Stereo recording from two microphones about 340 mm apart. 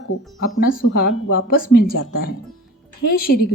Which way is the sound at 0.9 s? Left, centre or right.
Left.